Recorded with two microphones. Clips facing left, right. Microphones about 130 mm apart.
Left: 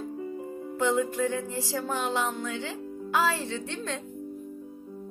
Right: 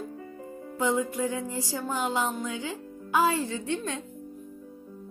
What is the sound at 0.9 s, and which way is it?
Speech, 10° right (ahead or behind).